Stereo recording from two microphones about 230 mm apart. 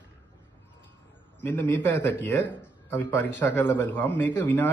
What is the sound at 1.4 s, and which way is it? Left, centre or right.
Speech, centre.